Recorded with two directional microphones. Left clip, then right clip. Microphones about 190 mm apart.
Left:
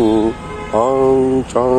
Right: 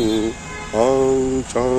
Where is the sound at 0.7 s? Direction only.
5° right (ahead or behind).